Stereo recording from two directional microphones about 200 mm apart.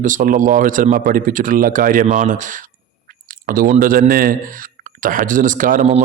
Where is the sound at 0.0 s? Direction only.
40° right (ahead or behind).